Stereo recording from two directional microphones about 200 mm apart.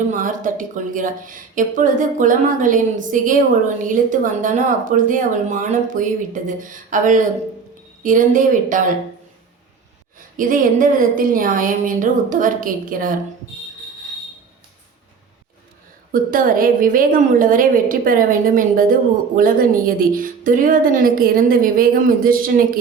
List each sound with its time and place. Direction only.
0.1 s a woman's voice: 40° right (ahead or behind)
10.2 s a woman's voice: 45° right (ahead or behind)
16.1 s a woman's voice: 45° right (ahead or behind)